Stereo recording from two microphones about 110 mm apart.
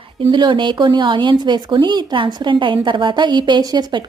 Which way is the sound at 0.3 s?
45° right (ahead or behind).